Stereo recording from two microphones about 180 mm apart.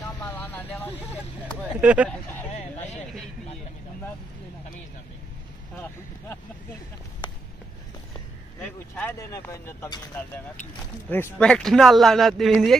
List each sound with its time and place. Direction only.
0.0 s vehicle: 10° left (ahead or behind)
1.1 s vehicle: 5° right (ahead or behind)
8.5 s speech: 10° left (ahead or behind)
11.1 s speech: 10° left (ahead or behind)